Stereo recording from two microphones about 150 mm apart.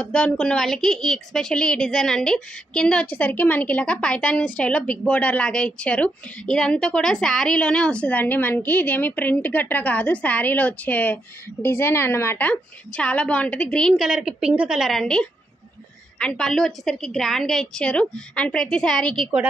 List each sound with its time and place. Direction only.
0.0 s a woman's voice: 5° left (ahead or behind)